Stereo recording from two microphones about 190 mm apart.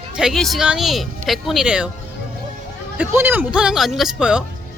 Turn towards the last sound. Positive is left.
turn(degrees=-5)  # may be behind; listen again after turning